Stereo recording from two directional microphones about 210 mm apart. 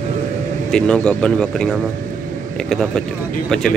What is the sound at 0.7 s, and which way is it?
Speech, 5° left (ahead or behind).